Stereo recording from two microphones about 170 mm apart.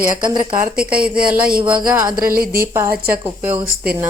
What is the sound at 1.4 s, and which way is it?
Speech, 60° right (ahead or behind).